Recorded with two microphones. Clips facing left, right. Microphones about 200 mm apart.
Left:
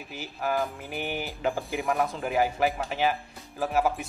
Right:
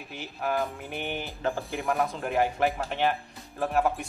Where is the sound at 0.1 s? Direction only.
Centre (ahead or behind).